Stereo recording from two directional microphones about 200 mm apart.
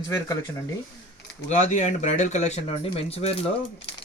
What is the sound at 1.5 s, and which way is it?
Speech, 35° left (ahead or behind).